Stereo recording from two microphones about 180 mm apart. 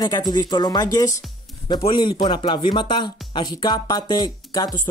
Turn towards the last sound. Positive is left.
turn(degrees=20)  # may be behind; listen again after turning